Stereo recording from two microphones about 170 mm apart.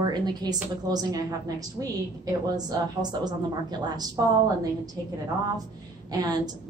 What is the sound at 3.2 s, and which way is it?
Speech, 25° right (ahead or behind).